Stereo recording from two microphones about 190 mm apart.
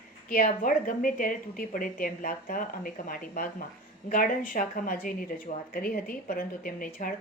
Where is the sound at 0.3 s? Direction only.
50° left (ahead or behind).